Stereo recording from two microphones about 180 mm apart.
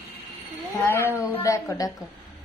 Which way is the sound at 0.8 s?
15° left (ahead or behind).